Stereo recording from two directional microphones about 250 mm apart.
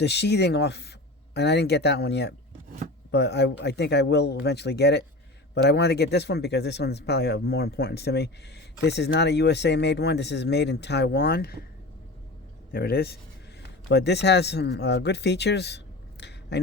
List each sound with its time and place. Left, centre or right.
0.0 s speech: left
12.7 s speech: left